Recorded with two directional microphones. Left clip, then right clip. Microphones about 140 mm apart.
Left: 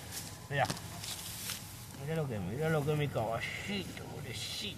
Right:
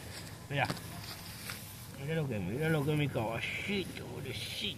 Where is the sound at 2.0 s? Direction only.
25° left (ahead or behind).